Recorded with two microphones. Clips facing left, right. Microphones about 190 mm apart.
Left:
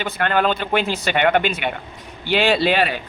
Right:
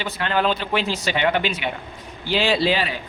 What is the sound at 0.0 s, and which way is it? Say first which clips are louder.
A man's voice: left 2 dB; 55° left (ahead or behind).